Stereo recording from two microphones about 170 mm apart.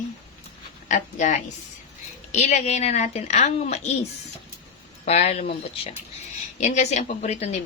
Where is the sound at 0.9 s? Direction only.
45° left (ahead or behind).